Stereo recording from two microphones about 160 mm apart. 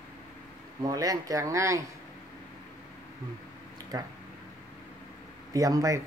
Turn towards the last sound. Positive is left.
turn(degrees=-20)  # may be behind; listen again after turning